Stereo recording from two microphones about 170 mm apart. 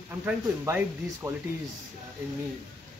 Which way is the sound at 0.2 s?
10° right (ahead or behind).